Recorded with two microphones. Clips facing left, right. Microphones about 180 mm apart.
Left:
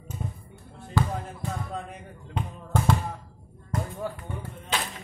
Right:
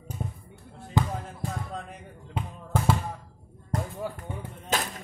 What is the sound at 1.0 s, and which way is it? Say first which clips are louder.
Basketball bounce: even; 20° right (ahead or behind).